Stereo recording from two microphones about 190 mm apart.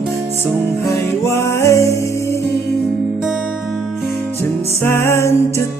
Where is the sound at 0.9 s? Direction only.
15° left (ahead or behind).